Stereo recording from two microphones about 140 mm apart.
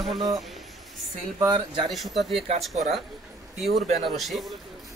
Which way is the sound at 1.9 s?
Centre (ahead or behind).